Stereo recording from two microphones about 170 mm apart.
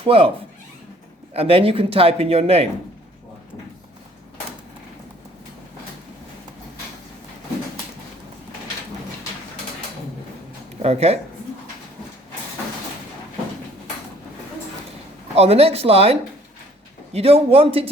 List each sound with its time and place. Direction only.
0.0 s speech: 30° right (ahead or behind)
1.3 s a man's voice: 35° right (ahead or behind)
10.8 s a man's voice: 40° right (ahead or behind)
15.4 s a man's voice: 35° right (ahead or behind)